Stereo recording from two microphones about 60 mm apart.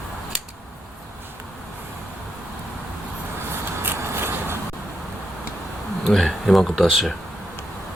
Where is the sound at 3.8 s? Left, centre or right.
Right.